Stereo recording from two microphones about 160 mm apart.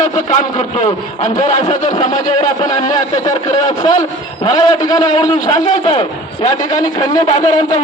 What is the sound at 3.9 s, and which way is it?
A man's voice, 35° left (ahead or behind).